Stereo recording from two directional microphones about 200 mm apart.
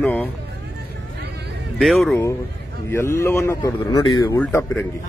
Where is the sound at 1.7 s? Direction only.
5° left (ahead or behind).